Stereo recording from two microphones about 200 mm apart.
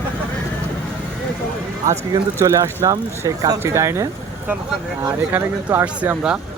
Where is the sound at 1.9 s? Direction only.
15° right (ahead or behind).